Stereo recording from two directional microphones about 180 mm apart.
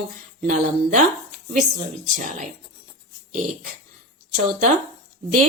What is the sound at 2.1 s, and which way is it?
Speech, 45° right (ahead or behind).